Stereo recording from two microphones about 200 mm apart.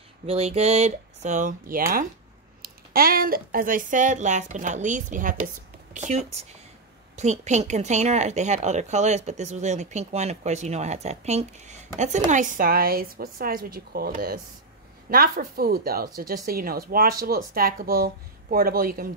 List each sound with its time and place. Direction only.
0.3 s speech: 30° right (ahead or behind)
2.6 s speech: 50° right (ahead or behind)